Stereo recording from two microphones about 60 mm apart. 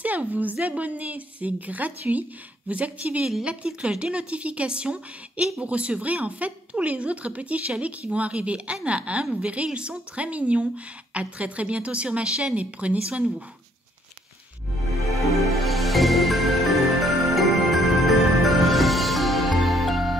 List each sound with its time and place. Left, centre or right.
0.0 s speech: right
15.1 s music: centre